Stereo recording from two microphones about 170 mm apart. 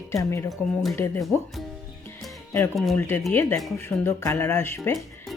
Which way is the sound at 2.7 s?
Centre (ahead or behind).